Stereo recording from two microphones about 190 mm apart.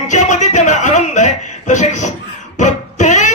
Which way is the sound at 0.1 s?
40° left (ahead or behind).